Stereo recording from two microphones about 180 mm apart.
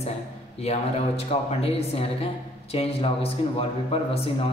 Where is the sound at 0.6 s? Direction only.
35° left (ahead or behind).